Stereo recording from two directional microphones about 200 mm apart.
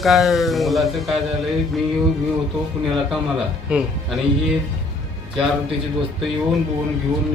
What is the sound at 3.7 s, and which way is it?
Speech, 5° right (ahead or behind).